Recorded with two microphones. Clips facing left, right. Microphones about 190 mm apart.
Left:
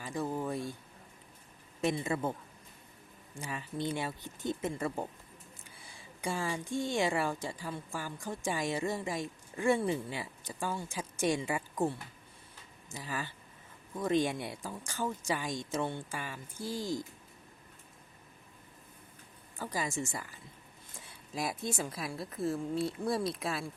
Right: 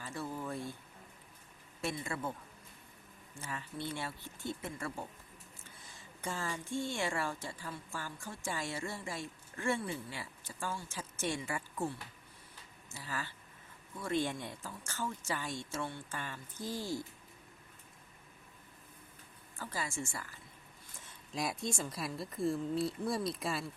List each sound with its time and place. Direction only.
0.0 s a sound: 15° left (ahead or behind)
0.4 s speech: 15° left (ahead or behind)
1.8 s a man's voice: 20° left (ahead or behind)
3.3 s speech: 15° left (ahead or behind)
12.9 s speech: 15° left (ahead or behind)
16.0 s speech: 10° left (ahead or behind)
19.5 s speech: 15° left (ahead or behind)
21.0 s a woman's voice: 5° left (ahead or behind)